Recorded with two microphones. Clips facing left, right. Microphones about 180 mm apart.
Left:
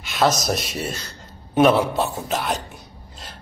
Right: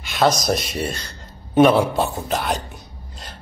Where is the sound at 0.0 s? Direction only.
Centre (ahead or behind).